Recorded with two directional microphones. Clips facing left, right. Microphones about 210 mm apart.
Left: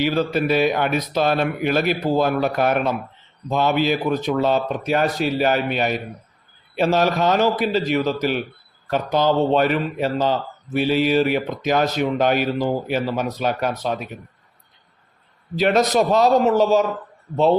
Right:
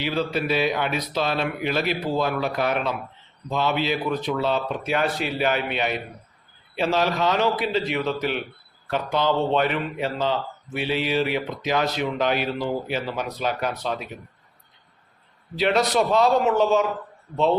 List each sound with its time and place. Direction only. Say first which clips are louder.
0.0 s a man's voice: left 5 dB; 45° left (ahead or behind)
15.5 s a man's voice: left 3 dB; 45° left (ahead or behind)